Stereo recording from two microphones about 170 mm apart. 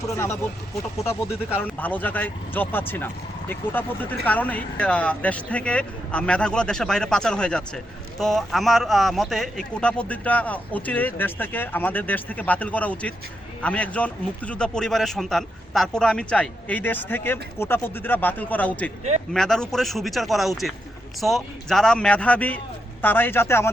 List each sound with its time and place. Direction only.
0.0 s a man's voice: 15° left (ahead or behind)